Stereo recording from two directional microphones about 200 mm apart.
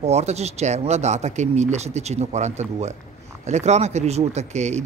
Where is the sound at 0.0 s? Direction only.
35° right (ahead or behind).